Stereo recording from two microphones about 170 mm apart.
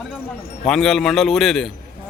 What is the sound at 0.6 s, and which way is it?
A man's voice, centre (ahead or behind).